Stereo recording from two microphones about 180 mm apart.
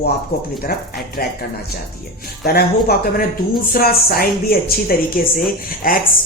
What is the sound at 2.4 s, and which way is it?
Speech, 60° left (ahead or behind).